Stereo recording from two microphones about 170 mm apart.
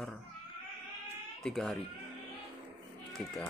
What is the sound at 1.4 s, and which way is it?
Speech, centre (ahead or behind).